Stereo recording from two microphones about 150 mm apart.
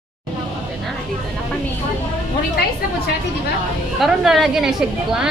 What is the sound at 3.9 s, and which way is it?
A woman's voice, centre (ahead or behind).